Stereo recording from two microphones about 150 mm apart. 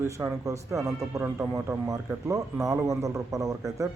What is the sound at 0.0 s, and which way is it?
A man's voice, 15° right (ahead or behind).